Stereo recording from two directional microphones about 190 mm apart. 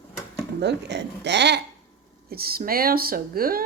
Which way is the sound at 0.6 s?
65° right (ahead or behind).